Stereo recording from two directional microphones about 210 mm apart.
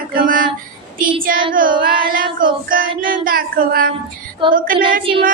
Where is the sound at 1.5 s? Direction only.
40° right (ahead or behind).